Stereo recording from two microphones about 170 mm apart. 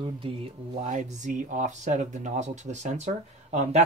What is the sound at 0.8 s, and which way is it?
Speech, 45° right (ahead or behind).